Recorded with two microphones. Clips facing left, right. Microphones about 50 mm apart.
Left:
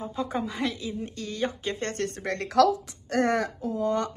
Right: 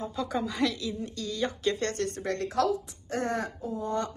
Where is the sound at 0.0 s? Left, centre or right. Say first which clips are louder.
Left 1 dB; left.